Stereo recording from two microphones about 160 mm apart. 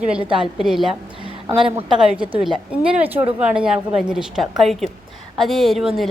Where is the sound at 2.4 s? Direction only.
5° right (ahead or behind).